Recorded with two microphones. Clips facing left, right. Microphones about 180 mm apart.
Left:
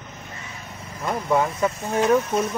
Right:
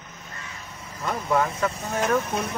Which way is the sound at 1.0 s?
15° left (ahead or behind).